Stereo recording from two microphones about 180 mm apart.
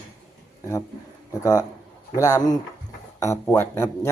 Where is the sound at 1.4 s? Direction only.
20° left (ahead or behind).